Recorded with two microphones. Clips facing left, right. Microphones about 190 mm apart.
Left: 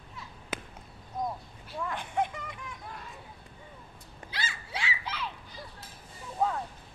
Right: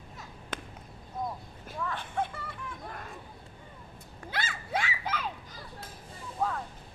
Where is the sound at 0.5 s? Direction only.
5° left (ahead or behind).